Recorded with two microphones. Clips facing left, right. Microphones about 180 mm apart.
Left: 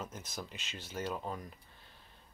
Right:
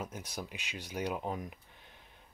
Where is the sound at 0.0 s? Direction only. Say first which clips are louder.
Right 2 dB; 10° right (ahead or behind).